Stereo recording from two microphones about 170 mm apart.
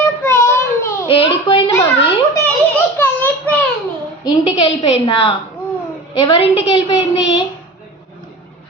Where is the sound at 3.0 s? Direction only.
10° left (ahead or behind).